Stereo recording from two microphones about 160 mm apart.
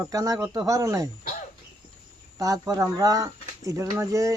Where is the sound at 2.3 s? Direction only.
20° right (ahead or behind).